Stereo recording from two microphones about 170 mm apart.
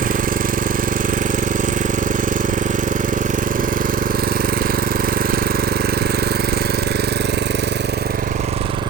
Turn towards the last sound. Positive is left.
turn(degrees=-70)  # may be behind; listen again after turning